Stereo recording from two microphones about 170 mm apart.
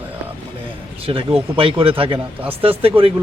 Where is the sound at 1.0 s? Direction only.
30° right (ahead or behind).